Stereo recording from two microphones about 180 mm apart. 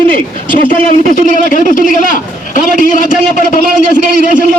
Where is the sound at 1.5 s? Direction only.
50° left (ahead or behind).